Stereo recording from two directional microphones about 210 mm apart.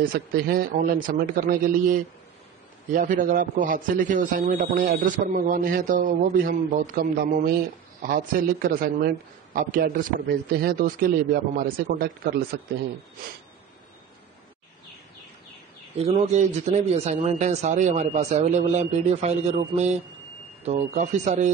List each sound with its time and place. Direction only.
0.1 s a man's voice: 45° right (ahead or behind)
16.0 s a man's voice: 30° right (ahead or behind)